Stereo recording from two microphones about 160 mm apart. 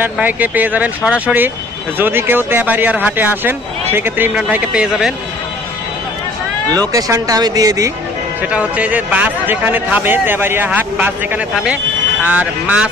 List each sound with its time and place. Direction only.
0.0 s a man's voice: 10° right (ahead or behind)
6.8 s speech: 20° right (ahead or behind)
8.4 s a man's voice: 10° right (ahead or behind)